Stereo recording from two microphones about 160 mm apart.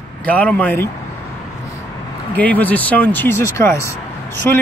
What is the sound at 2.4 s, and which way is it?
Speech, 10° left (ahead or behind).